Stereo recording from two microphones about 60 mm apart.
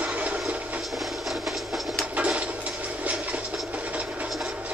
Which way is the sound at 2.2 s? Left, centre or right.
Right.